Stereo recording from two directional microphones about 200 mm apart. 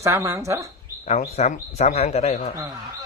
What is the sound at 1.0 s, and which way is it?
Speech, 35° left (ahead or behind).